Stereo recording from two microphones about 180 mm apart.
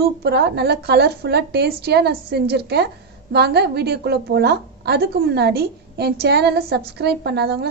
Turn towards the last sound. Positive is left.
turn(degrees=-65)  # may be behind; listen again after turning